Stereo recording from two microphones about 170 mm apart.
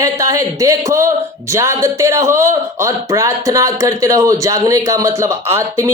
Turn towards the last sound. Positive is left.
turn(degrees=-15)  # may be behind; listen again after turning